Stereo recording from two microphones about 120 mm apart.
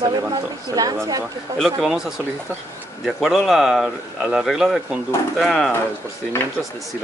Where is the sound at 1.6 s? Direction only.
5° right (ahead or behind).